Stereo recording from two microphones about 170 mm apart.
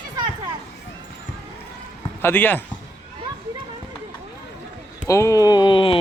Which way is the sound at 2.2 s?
10° left (ahead or behind).